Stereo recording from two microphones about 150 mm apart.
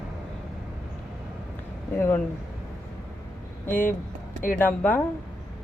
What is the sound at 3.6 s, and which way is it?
Speech, 65° left (ahead or behind).